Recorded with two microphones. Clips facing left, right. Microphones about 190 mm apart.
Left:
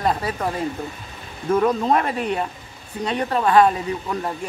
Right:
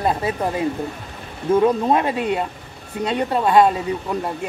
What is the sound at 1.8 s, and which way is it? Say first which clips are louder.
Speech: right 2 dB; 20° right (ahead or behind).